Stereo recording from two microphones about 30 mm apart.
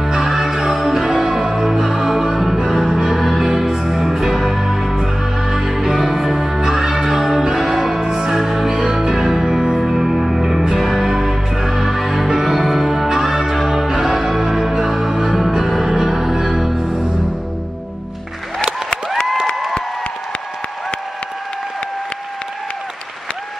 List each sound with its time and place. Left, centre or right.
0.1 s music: right
0.7 s music: centre
6.1 s music: centre
6.6 s music: centre
7.2 s change ringing: centre
7.8 s music: centre
8.4 s music: centre
9.0 s music: centre